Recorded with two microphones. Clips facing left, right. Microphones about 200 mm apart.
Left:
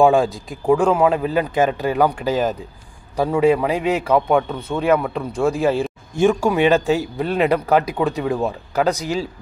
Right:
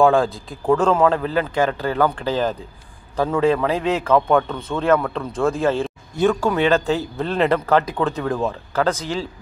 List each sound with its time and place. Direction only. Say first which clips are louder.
0.0 s a man's voice: left 1 dB; 15° left (ahead or behind)